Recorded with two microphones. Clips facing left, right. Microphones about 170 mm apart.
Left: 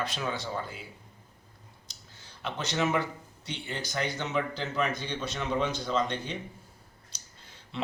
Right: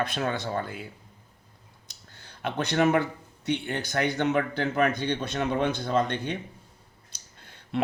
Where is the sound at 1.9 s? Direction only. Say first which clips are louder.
Right 5 dB; 60° right (ahead or behind).